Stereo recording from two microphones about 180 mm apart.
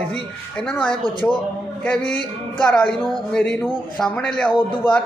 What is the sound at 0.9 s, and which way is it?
Speech, 30° left (ahead or behind).